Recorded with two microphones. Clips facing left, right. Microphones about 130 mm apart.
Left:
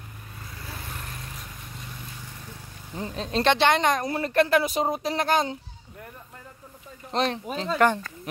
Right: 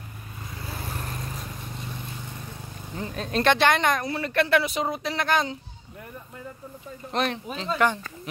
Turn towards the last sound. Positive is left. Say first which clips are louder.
# left 2 dB
turn(degrees=45)  # may be behind; listen again after turning